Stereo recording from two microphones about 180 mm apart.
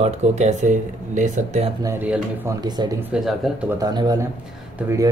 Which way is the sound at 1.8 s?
10° right (ahead or behind).